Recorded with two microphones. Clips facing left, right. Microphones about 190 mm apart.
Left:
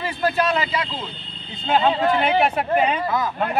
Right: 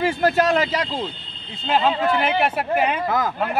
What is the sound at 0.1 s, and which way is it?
Speech, 45° right (ahead or behind).